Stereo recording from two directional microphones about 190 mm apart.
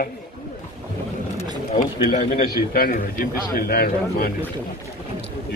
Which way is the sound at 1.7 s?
45° left (ahead or behind).